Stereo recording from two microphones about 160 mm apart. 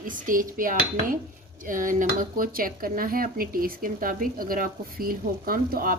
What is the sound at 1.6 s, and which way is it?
Speech, 55° right (ahead or behind).